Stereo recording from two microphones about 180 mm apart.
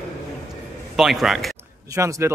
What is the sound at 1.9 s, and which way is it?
Speech, 15° right (ahead or behind).